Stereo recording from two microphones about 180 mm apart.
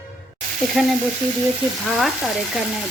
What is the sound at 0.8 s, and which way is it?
A woman's voice, 5° right (ahead or behind).